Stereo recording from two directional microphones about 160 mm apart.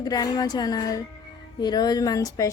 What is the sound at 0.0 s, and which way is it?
Speech, 25° left (ahead or behind).